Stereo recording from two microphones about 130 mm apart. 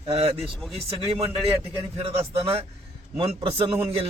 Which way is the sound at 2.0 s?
50° right (ahead or behind).